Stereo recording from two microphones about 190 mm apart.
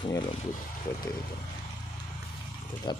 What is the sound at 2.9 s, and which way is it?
Speech, 25° left (ahead or behind).